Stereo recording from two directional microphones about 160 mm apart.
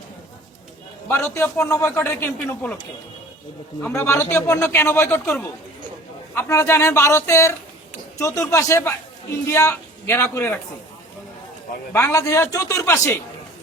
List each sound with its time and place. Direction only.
1.0 s a man's voice: 15° left (ahead or behind)
3.8 s a man's voice: 15° left (ahead or behind)
6.3 s a man's voice: 15° left (ahead or behind)
11.9 s a man's voice: 20° left (ahead or behind)